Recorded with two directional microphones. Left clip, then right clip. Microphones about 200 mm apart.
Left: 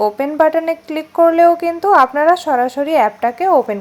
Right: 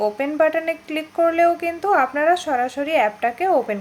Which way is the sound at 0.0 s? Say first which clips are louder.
Left 5 dB; 20° left (ahead or behind).